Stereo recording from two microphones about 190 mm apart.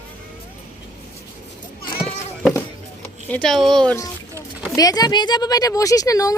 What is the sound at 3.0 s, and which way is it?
Speech, 5° left (ahead or behind).